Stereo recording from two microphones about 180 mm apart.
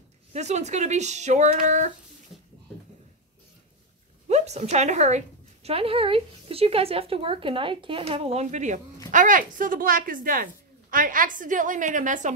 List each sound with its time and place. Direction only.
0.3 s a woman's voice: 40° right (ahead or behind)
4.3 s a woman's voice: 40° right (ahead or behind)